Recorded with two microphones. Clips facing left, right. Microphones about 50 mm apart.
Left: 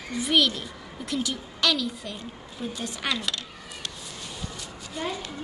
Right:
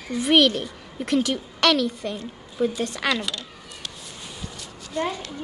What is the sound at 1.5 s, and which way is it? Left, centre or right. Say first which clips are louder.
A woman's voice: right 5 dB; right.